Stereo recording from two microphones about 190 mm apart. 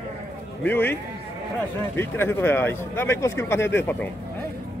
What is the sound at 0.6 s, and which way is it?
Speech, 10° left (ahead or behind).